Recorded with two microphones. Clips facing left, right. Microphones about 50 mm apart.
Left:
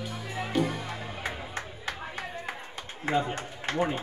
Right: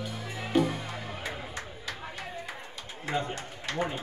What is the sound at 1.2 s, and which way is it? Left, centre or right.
Music, left.